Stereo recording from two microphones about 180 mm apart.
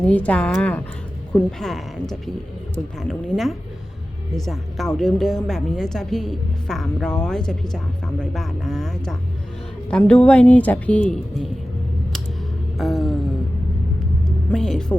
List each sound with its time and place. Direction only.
0.0 s speech: 5° left (ahead or behind)
12.8 s speech: centre (ahead or behind)
14.3 s vehicle: centre (ahead or behind)